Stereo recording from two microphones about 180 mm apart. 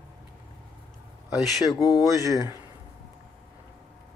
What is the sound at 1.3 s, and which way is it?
Speech, centre (ahead or behind).